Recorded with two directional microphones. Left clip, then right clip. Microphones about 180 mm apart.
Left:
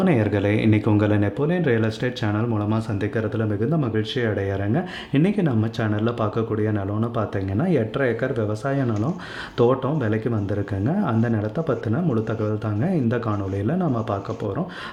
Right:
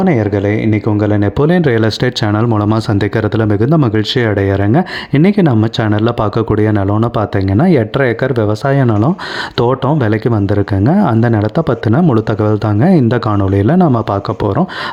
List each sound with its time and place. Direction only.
0.0 s speech: 35° right (ahead or behind)